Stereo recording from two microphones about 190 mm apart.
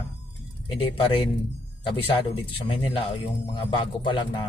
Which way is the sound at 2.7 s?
30° left (ahead or behind).